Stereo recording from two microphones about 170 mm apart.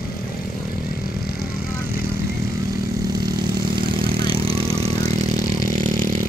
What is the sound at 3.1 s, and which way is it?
Vehicle, 25° right (ahead or behind).